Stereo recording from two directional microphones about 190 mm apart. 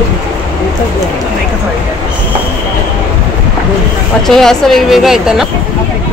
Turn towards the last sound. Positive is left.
turn(degrees=0)  # may be behind; listen again after turning